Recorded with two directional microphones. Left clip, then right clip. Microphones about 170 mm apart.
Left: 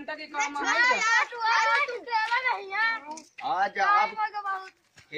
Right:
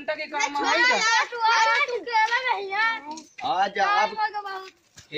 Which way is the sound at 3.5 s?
15° right (ahead or behind).